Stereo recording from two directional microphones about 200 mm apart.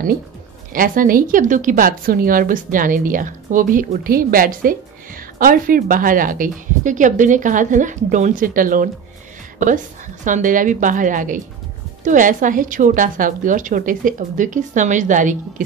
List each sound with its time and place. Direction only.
0.7 s speech: 45° right (ahead or behind)
10.2 s a woman's voice: 40° right (ahead or behind)